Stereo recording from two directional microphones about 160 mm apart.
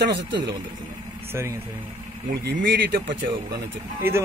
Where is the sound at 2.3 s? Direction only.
80° right.